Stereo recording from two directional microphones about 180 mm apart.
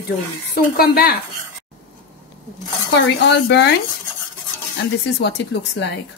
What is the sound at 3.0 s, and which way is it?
Speech, 70° left (ahead or behind).